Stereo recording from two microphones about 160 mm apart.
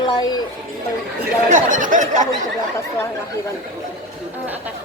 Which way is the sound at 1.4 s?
50° right (ahead or behind).